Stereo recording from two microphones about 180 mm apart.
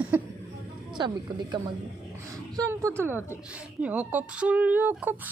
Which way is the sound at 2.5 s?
15° right (ahead or behind).